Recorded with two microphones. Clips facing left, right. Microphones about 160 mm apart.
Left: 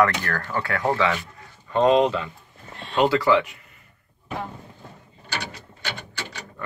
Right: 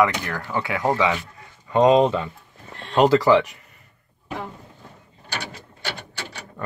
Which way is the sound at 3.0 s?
40° right (ahead or behind).